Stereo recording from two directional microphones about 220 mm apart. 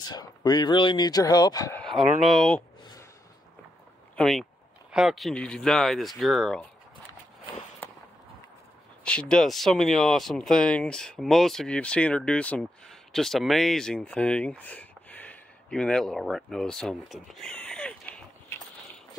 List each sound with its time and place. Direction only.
0.0 s speech: 20° left (ahead or behind)
1.8 s speech: centre (ahead or behind)
2.8 s a sound: 20° left (ahead or behind)
4.2 s speech: centre (ahead or behind)
7.8 s fireworks: 10° left (ahead or behind)
9.0 s speech: 5° left (ahead or behind)